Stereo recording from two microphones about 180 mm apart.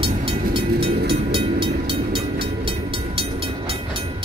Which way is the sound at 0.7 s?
60° right (ahead or behind).